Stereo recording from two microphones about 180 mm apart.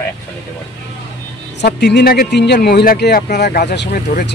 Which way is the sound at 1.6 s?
65° left (ahead or behind).